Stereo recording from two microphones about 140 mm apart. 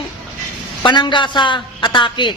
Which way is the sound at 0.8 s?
35° left (ahead or behind).